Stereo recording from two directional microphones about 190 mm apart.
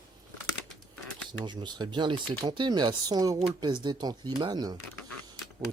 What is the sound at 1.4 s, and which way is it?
Speech, 25° right (ahead or behind).